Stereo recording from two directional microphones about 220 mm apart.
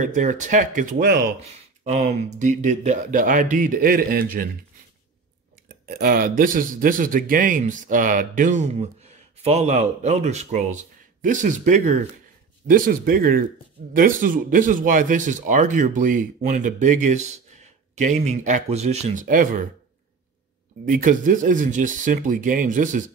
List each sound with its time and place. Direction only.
0.0 s speech: 35° right (ahead or behind)
5.7 s speech: 40° right (ahead or behind)
20.8 s speech: 35° right (ahead or behind)